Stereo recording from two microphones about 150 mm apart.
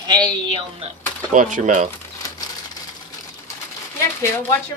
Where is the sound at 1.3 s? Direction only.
55° right (ahead or behind).